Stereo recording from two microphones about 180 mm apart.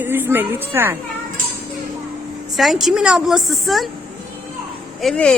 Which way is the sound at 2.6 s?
Centre (ahead or behind).